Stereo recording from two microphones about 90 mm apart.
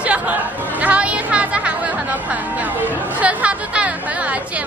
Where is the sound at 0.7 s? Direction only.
15° right (ahead or behind).